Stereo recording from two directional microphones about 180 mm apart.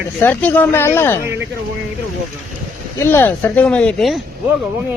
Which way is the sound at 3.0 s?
15° left (ahead or behind).